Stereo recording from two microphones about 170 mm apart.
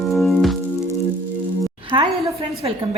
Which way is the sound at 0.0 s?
Centre (ahead or behind).